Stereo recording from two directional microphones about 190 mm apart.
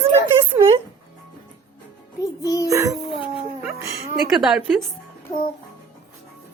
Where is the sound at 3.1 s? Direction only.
Centre (ahead or behind).